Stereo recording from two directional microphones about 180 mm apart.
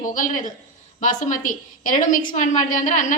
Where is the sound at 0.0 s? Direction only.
45° left (ahead or behind).